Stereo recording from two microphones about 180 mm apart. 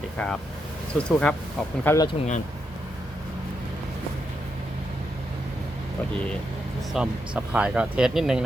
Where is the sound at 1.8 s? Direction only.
15° left (ahead or behind).